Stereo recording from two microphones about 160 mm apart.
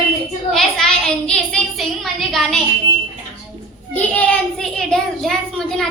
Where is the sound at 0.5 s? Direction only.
5° left (ahead or behind).